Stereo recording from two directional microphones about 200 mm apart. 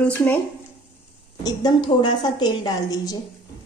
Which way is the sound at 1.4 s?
20° left (ahead or behind).